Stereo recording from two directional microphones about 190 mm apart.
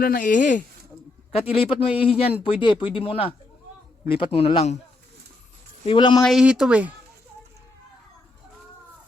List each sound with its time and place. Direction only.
0.0 s speech: 50° left (ahead or behind)
1.5 s speech: 30° left (ahead or behind)
5.8 s speech: 25° left (ahead or behind)
6.2 s speech: 5° right (ahead or behind)